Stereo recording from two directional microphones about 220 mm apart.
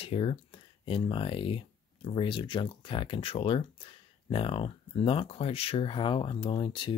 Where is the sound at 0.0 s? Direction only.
25° left (ahead or behind).